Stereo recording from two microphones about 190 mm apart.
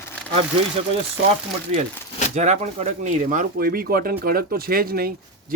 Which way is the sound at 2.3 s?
35° right (ahead or behind).